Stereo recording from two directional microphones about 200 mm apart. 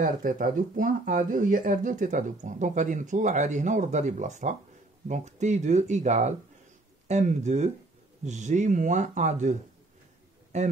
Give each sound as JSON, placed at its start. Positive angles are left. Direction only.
{"t": 0.0, "sound": "speech", "side_deg": -40}